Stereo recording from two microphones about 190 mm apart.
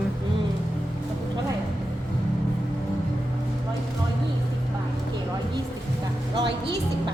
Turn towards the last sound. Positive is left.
turn(degrees=-25)  # may be behind; listen again after turning